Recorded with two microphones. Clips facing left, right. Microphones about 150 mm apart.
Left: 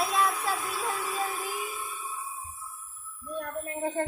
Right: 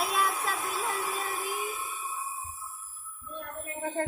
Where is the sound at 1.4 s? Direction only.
15° right (ahead or behind).